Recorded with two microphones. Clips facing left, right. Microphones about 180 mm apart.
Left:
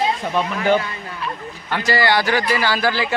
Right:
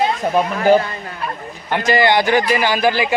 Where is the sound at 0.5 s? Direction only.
40° right (ahead or behind).